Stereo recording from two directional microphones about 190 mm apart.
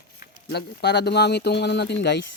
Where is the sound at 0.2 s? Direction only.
60° left (ahead or behind).